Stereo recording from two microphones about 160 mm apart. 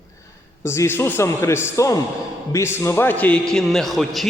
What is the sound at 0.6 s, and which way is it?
A man's voice, 15° left (ahead or behind).